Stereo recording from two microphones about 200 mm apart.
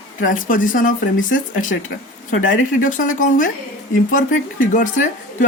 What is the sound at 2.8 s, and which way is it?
Speech, 40° left (ahead or behind).